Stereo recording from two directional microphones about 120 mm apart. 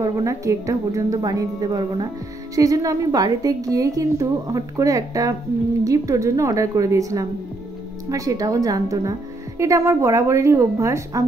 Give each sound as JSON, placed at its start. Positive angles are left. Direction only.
{"t": 0.0, "sound": "a woman's voice", "side_deg": -25}